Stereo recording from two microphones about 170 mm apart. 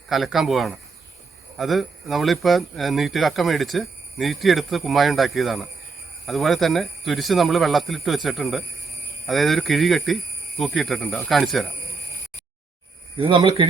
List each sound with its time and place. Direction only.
0.1 s speech: centre (ahead or behind)
13.1 s speech: 30° right (ahead or behind)